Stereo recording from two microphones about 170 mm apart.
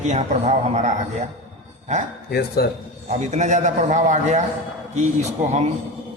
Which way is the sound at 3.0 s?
45° right (ahead or behind).